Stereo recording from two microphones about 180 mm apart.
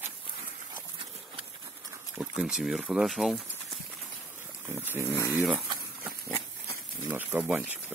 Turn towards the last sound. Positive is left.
turn(degrees=-5)  # may be behind; listen again after turning